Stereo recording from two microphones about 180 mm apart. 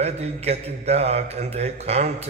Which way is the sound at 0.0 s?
35° right (ahead or behind).